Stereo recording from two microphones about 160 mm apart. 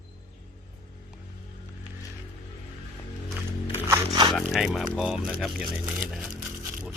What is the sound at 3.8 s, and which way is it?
Biting, 15° right (ahead or behind).